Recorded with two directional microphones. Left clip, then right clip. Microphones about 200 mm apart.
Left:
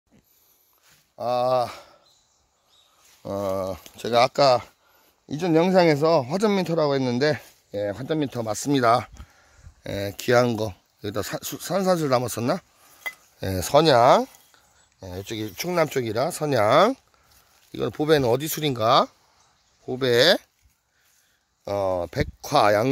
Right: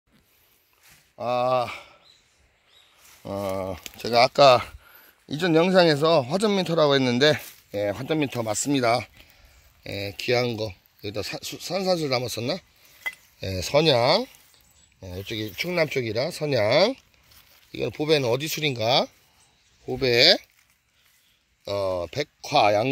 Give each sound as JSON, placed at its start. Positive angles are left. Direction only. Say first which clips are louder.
{"t": 1.1, "sound": "speech", "louder": "left 1 dB", "side_deg": 10}
{"t": 3.2, "sound": "speech", "louder": "left 2 dB", "side_deg": 25}
{"t": 5.2, "sound": "speech", "louder": "even", "side_deg": 20}
{"t": 9.8, "sound": "speech", "louder": "left 3 dB", "side_deg": 90}
{"t": 10.1, "sound": "speech", "louder": "left 4 dB", "side_deg": 40}
{"t": 12.2, "sound": "cutlery", "louder": "left 3 dB", "side_deg": 45}
{"t": 13.7, "sound": "speech", "louder": "left 4 dB", "side_deg": 20}
{"t": 17.9, "sound": "speech", "louder": "left 2 dB", "side_deg": 35}
{"t": 21.9, "sound": "speech", "louder": "left 2 dB", "side_deg": 35}